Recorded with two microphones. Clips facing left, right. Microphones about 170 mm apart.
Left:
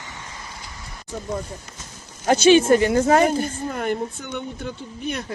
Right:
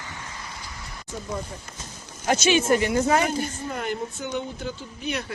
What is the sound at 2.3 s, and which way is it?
A woman's voice, 30° left (ahead or behind).